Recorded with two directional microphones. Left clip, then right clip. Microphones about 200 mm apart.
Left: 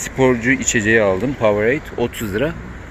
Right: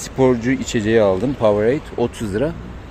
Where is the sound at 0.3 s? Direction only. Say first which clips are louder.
Left 4 dB; 15° right (ahead or behind).